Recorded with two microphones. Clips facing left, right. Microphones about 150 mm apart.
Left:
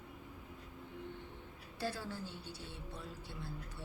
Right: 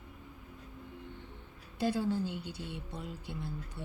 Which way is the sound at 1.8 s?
20° right (ahead or behind).